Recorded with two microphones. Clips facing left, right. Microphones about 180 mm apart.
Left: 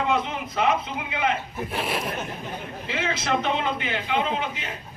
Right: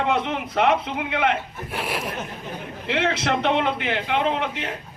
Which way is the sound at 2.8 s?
65° right (ahead or behind).